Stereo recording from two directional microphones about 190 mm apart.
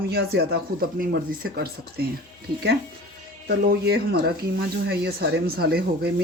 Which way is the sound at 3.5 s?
55° right (ahead or behind).